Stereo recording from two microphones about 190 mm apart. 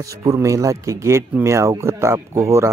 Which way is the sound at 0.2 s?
15° right (ahead or behind).